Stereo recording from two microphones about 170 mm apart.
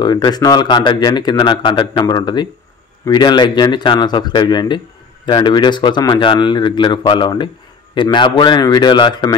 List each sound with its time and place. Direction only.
0.0 s speech: 25° left (ahead or behind)